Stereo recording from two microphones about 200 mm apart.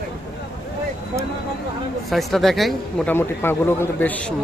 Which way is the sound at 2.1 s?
Centre (ahead or behind).